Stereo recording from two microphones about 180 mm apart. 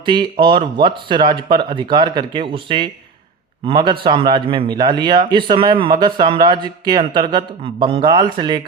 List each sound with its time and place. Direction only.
0.0 s speech: 25° right (ahead or behind)